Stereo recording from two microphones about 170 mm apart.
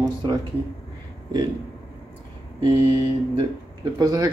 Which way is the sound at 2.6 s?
30° right (ahead or behind).